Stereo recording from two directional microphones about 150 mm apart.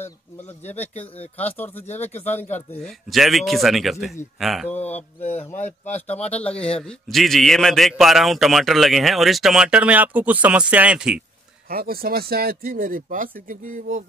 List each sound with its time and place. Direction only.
0.6 s speech: 10° left (ahead or behind)
2.5 s a man's voice: 5° left (ahead or behind)
4.6 s speech: 10° left (ahead or behind)
5.3 s speech: 50° left (ahead or behind)
6.1 s a man's voice: 10° left (ahead or behind)
11.7 s speech: 85° right; by 14.0 s 60° right (ahead or behind)